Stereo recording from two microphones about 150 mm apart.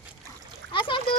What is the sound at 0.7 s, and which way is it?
Splash, 30° left (ahead or behind).